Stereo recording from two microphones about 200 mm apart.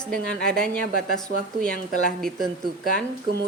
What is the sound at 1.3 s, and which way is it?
Speech, 45° right (ahead or behind).